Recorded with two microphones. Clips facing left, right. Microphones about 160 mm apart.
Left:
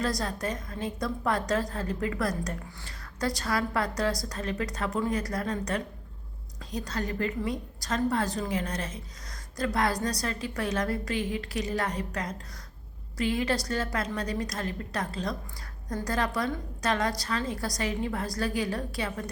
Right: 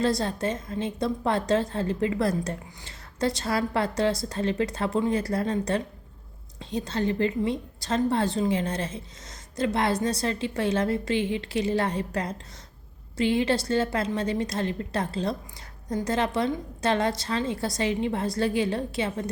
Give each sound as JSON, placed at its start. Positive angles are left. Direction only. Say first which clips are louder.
{"t": 0.0, "sound": "a woman's voice", "louder": "right 5 dB", "side_deg": -25}